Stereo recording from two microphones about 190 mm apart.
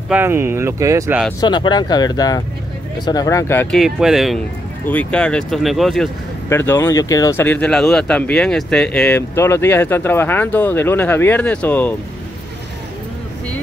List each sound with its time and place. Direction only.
0.1 s speech: 10° right (ahead or behind)
1.4 s speech: 25° left (ahead or behind)
3.7 s speech: centre (ahead or behind)
6.5 s speech: 10° left (ahead or behind)